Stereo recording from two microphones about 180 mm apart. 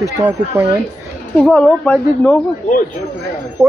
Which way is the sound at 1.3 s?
5° left (ahead or behind).